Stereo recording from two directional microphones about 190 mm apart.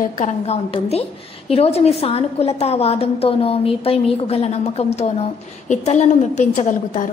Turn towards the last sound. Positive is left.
turn(degrees=40)  # may be behind; listen again after turning